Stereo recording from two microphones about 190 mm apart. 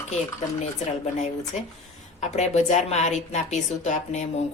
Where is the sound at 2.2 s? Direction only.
35° left (ahead or behind).